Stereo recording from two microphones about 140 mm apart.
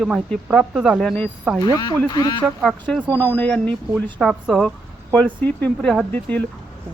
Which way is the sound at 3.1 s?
10° left (ahead or behind).